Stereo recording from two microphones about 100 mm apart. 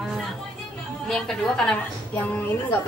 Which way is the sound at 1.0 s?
5° left (ahead or behind).